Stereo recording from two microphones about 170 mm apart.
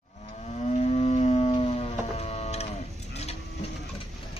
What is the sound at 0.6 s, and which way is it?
Music, 40° left (ahead or behind).